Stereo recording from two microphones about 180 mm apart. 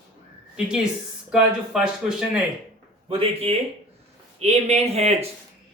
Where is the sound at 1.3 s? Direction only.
5° right (ahead or behind).